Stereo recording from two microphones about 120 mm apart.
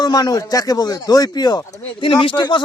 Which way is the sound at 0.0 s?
35° left (ahead or behind).